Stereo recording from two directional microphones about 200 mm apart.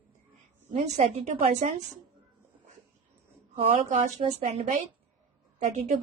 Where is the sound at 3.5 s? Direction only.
35° right (ahead or behind).